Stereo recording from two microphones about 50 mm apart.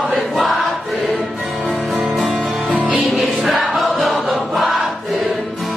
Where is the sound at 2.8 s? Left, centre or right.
Right.